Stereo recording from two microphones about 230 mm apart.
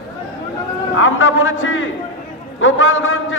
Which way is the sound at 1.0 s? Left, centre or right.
Left.